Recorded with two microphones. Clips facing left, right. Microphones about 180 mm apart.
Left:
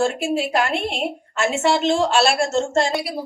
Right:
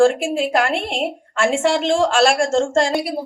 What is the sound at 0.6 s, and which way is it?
Speech, 90° right.